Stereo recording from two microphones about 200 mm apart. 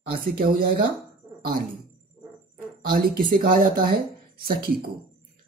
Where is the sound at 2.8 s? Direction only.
45° right (ahead or behind).